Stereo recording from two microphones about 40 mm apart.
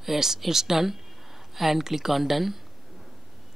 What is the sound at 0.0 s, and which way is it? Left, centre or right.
Speech, centre.